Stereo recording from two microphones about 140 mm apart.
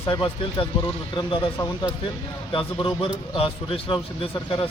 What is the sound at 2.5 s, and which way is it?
Speech, 40° left (ahead or behind).